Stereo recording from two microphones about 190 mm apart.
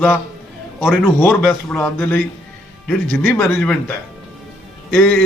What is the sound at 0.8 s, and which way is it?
A man's voice, 5° left (ahead or behind).